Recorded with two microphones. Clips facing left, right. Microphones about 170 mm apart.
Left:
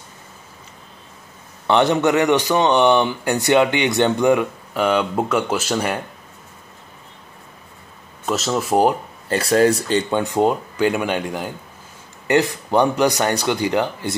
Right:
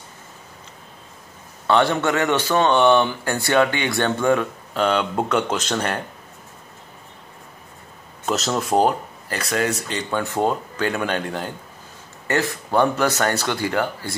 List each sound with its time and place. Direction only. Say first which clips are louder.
1.7 s speech: left 3 dB; 20° left (ahead or behind)
8.3 s speech: left 2 dB; centre (ahead or behind)
9.3 s speech: left 8 dB; 30° left (ahead or behind)
10.1 s speech: left 1 dB; 15° left (ahead or behind)